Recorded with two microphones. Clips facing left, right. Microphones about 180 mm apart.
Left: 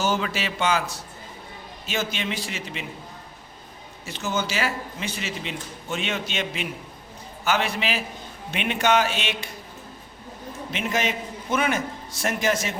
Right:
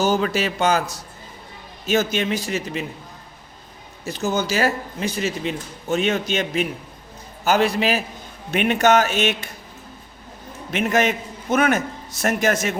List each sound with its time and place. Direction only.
0.0 s speech: 40° right (ahead or behind)
4.0 s speech: 40° right (ahead or behind)
10.7 s speech: 50° right (ahead or behind)